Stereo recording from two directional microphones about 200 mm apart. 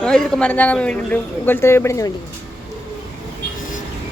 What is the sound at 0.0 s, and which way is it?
A man's voice, 5° left (ahead or behind).